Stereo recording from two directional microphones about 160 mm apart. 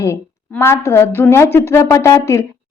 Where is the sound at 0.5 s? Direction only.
15° left (ahead or behind).